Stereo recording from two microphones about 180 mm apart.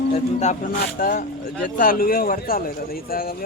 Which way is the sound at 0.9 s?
55° left (ahead or behind).